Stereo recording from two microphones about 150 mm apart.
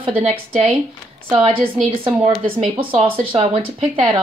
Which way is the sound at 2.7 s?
35° right (ahead or behind).